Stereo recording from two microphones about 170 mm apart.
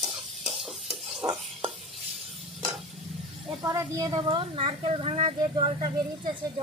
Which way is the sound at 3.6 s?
20° right (ahead or behind).